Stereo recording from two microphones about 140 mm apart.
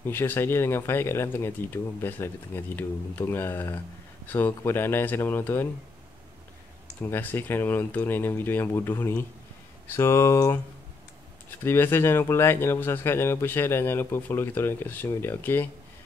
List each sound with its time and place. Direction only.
0.0 s speech: 15° left (ahead or behind)
7.0 s speech: 15° left (ahead or behind)
11.6 s speech: 15° left (ahead or behind)